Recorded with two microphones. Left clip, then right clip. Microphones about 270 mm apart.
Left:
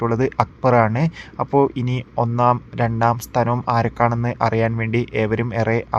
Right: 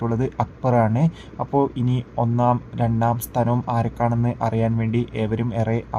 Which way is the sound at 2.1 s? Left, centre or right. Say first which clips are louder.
Left 3 dB; left.